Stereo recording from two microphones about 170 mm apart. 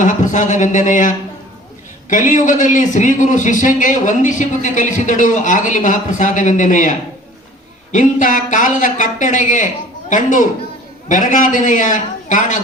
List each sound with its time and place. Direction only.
0.0 s a man's voice: 45° left (ahead or behind)
7.9 s a man's voice: 50° left (ahead or behind)